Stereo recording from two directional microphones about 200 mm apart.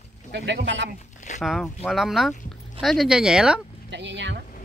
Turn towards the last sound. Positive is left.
turn(degrees=-60)  # may be behind; listen again after turning